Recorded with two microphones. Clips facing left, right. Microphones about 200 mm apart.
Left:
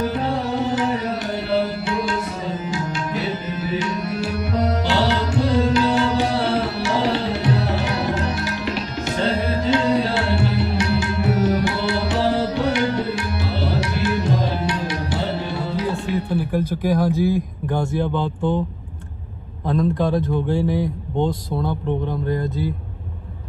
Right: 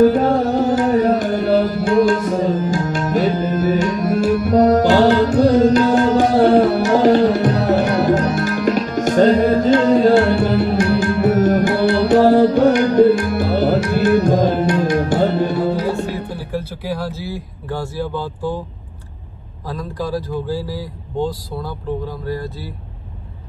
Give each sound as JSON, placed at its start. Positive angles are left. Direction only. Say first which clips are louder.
{"t": 0.0, "sound": "music", "louder": "right 10 dB", "side_deg": -45}
{"t": 16.5, "sound": "a sound", "louder": "left 3 dB", "side_deg": 15}
{"t": 20.0, "sound": "speech", "louder": "left 2 dB", "side_deg": 25}
{"t": 20.2, "sound": "speech", "louder": "left 2 dB", "side_deg": -5}
{"t": 20.7, "sound": "a man's voice", "louder": "left 3 dB", "side_deg": 20}